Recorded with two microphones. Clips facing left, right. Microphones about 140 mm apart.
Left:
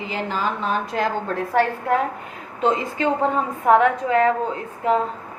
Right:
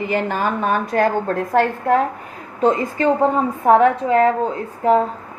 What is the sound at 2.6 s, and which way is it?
A woman's voice, 45° right (ahead or behind).